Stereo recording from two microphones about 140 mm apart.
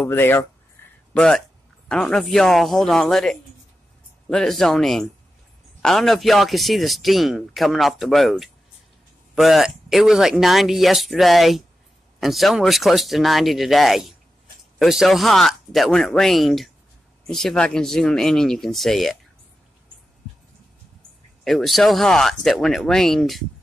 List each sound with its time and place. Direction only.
0.0 s a man's voice: 15° left (ahead or behind)
21.5 s a man's voice: centre (ahead or behind)